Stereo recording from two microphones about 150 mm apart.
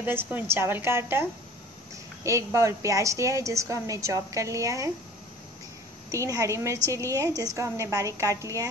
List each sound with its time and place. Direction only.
0.0 s a woman's voice: 15° right (ahead or behind)
2.2 s a woman's voice: 20° right (ahead or behind)
6.1 s a woman's voice: 20° right (ahead or behind)